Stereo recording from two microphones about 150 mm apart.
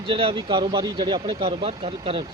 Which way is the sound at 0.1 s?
35° right (ahead or behind).